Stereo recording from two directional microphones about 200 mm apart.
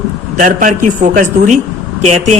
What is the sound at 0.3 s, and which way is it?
A woman's voice, 40° right (ahead or behind).